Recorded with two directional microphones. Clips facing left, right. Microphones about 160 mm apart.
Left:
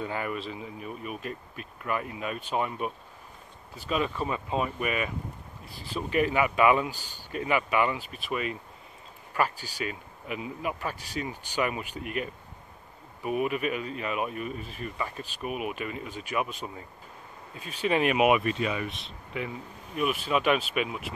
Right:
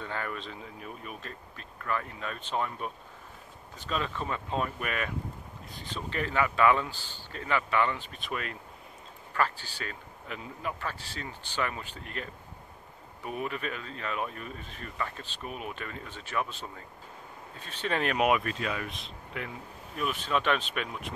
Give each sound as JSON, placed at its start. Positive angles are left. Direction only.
{"t": 0.0, "sound": "speech", "side_deg": 10}